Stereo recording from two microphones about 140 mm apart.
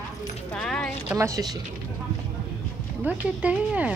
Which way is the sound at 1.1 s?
25° right (ahead or behind).